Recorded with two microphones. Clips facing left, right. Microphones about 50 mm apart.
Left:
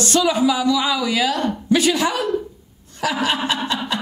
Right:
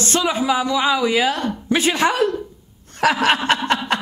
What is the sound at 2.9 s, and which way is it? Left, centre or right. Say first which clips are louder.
Chuckle: right 4 dB; right.